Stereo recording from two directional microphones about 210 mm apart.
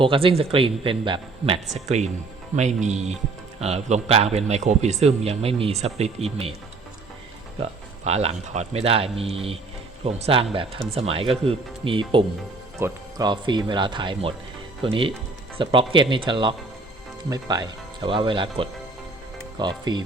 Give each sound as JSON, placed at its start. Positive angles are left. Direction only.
{"t": 0.0, "sound": "speech", "side_deg": -25}
{"t": 7.6, "sound": "speech", "side_deg": -30}